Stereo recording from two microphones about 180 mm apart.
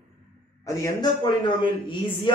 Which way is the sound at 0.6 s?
20° left (ahead or behind).